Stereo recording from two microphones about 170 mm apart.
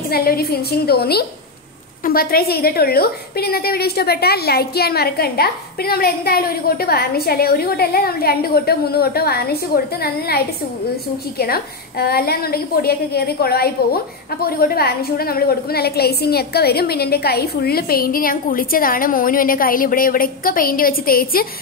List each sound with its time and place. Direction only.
0.1 s a woman's voice: 60° left (ahead or behind)